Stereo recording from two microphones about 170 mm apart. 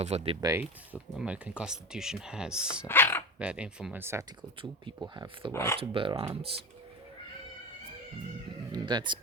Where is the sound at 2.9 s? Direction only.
10° left (ahead or behind).